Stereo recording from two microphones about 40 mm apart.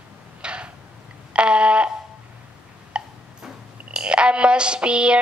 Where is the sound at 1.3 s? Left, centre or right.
Right.